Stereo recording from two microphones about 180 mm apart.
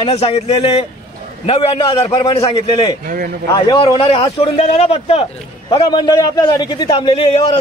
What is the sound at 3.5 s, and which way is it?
A man's voice, 25° left (ahead or behind).